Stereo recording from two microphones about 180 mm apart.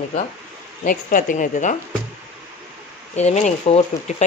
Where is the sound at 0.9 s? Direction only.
50° left (ahead or behind).